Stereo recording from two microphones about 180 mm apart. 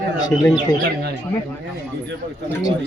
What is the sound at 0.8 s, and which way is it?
Speech, 65° right (ahead or behind).